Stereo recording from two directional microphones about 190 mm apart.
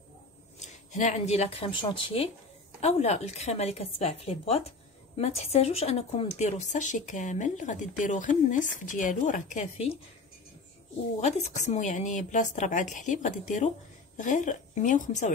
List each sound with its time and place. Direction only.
0.6 s a woman's voice: 40° left (ahead or behind)
11.1 s a woman's voice: 35° left (ahead or behind)